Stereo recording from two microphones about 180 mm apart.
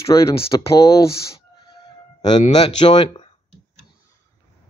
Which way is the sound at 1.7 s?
25° left (ahead or behind).